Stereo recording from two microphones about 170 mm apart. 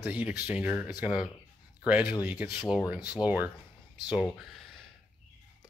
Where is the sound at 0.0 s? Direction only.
10° right (ahead or behind).